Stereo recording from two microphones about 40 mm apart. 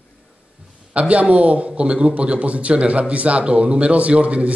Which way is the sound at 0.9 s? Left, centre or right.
Right.